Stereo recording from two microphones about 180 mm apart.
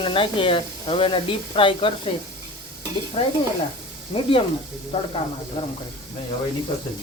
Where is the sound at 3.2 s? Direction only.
35° left (ahead or behind).